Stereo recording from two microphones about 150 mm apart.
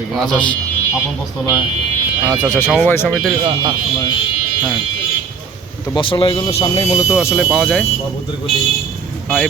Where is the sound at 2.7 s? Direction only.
15° left (ahead or behind).